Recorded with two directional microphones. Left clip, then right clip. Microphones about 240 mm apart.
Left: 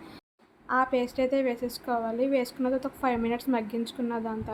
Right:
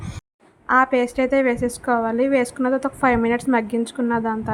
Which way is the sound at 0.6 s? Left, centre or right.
Right.